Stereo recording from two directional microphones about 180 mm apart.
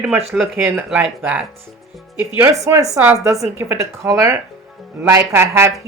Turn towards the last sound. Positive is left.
turn(degrees=-15)  # may be behind; listen again after turning